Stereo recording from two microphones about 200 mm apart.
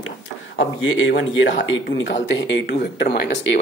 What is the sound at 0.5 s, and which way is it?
Speech, 70° left (ahead or behind).